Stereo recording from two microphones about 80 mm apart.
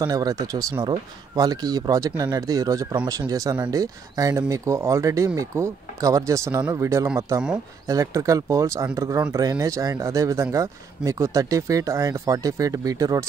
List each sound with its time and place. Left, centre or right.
0.0 s speech: right